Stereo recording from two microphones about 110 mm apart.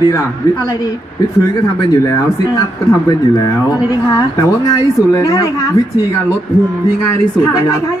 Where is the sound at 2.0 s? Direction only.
30° left (ahead or behind).